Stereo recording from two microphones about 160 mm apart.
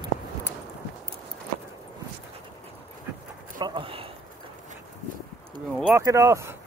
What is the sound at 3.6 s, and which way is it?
Speech, 30° right (ahead or behind).